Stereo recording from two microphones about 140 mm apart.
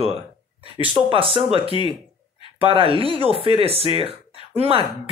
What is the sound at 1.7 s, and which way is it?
Speech, 40° left (ahead or behind).